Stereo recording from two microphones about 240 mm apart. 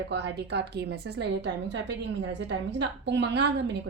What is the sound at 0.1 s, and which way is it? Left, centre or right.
Speech, right.